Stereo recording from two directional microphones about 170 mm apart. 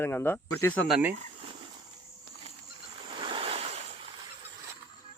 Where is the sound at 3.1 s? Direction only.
30° right (ahead or behind).